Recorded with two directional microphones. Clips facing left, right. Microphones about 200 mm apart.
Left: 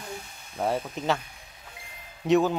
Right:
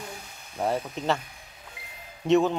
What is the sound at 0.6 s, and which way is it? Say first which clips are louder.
Speech: even; centre (ahead or behind).